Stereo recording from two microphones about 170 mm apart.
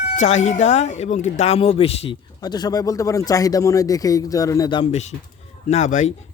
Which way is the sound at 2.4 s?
25° left (ahead or behind).